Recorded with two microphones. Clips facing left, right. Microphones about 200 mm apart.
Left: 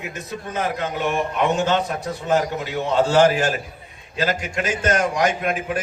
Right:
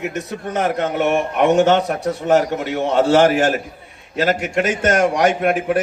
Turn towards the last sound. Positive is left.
turn(degrees=-65)  # may be behind; listen again after turning